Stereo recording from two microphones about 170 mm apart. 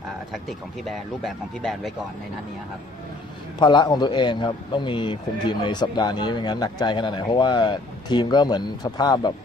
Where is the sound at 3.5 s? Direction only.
25° left (ahead or behind).